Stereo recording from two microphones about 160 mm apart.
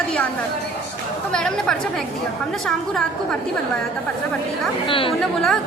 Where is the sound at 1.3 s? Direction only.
5° left (ahead or behind).